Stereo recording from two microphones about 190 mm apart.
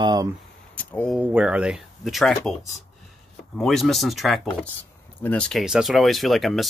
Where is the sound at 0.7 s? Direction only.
5° left (ahead or behind).